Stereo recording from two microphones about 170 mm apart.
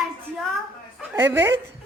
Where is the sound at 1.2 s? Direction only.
15° right (ahead or behind).